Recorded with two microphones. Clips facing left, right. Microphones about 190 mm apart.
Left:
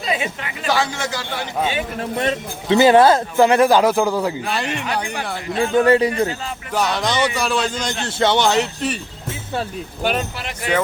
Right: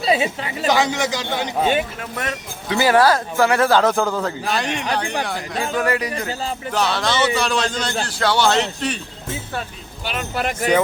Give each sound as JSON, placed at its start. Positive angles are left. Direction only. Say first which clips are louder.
{"t": 0.0, "sound": "a woman's voice", "louder": "right 4 dB", "side_deg": -30}
{"t": 0.7, "sound": "a man's voice", "louder": "right 2 dB", "side_deg": -15}
{"t": 2.0, "sound": "speech", "louder": "left 6 dB", "side_deg": 25}
{"t": 5.7, "sound": "speech", "louder": "left 8 dB", "side_deg": 30}
{"t": 6.7, "sound": "speech", "louder": "left 1 dB", "side_deg": 15}
{"t": 8.0, "sound": "speech", "louder": "left 2 dB", "side_deg": 20}
{"t": 10.3, "sound": "speech", "louder": "right 7 dB", "side_deg": -50}